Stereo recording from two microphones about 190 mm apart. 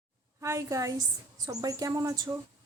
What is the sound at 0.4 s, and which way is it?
A woman's voice, 15° right (ahead or behind).